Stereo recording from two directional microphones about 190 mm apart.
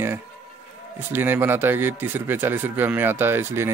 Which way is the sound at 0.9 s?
10° right (ahead or behind).